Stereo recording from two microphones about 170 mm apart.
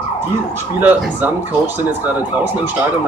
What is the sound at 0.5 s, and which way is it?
Speech, 10° right (ahead or behind).